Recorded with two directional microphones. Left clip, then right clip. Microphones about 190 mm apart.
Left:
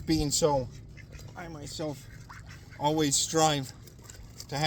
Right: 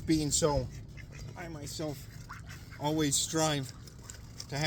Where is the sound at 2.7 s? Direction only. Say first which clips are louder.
Left 4 dB; 40° left (ahead or behind).